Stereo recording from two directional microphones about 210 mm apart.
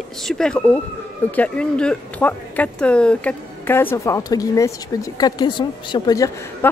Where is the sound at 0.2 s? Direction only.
Centre (ahead or behind).